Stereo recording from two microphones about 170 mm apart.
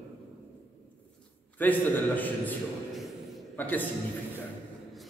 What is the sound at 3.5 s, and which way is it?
Speech, 10° left (ahead or behind).